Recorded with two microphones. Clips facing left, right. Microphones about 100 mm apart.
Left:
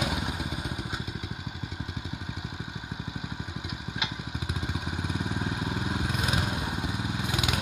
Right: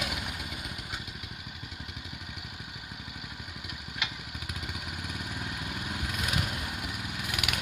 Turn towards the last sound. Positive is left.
turn(degrees=25)  # may be behind; listen again after turning